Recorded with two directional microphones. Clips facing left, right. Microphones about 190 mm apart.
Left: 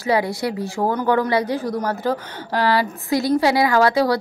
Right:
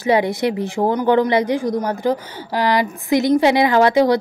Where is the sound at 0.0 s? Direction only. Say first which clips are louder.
Right 4 dB; 20° right (ahead or behind).